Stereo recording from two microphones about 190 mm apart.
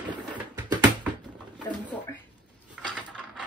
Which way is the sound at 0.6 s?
20° right (ahead or behind).